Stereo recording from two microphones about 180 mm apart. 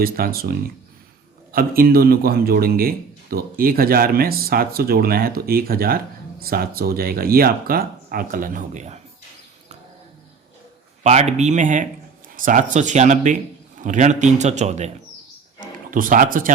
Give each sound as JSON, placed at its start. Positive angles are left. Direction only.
{"t": 0.0, "sound": "a man's voice", "side_deg": -55}
{"t": 1.5, "sound": "a man's voice", "side_deg": -55}
{"t": 11.0, "sound": "a man's voice", "side_deg": -35}